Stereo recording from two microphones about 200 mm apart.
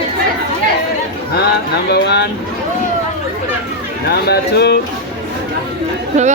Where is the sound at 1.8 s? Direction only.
55° left (ahead or behind).